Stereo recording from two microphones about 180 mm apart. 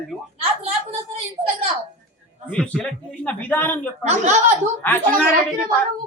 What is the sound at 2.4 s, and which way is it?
A woman's voice, 5° left (ahead or behind).